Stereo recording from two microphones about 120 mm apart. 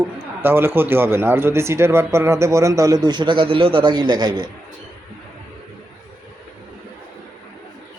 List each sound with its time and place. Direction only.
0.4 s speech: 20° right (ahead or behind); by 4.4 s 40° right (ahead or behind)